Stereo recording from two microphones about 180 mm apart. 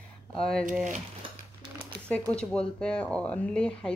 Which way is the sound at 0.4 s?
5° left (ahead or behind).